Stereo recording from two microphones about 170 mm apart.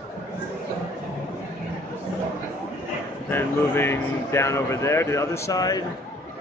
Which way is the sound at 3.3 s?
15° left (ahead or behind).